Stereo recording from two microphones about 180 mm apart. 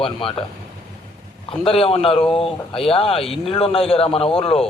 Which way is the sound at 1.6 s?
30° left (ahead or behind).